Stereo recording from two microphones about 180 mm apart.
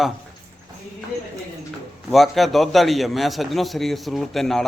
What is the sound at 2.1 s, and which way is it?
A man's voice, centre (ahead or behind).